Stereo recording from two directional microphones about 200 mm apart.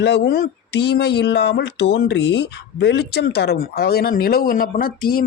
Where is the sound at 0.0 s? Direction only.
55° left (ahead or behind).